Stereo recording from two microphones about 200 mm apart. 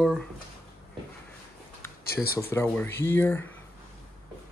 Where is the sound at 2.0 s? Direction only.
50° left (ahead or behind).